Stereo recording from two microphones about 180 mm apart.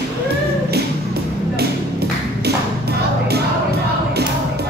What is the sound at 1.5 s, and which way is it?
Music, 65° right (ahead or behind).